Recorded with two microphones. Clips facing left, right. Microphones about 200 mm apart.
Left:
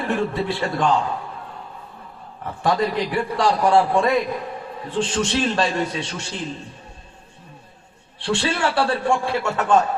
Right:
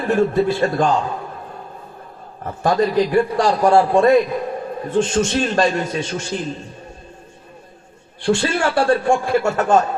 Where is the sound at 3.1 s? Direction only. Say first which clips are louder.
Right 4 dB; 45° right (ahead or behind).